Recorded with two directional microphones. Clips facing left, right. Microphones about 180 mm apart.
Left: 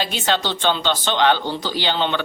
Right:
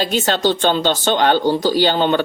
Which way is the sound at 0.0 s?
45° right (ahead or behind).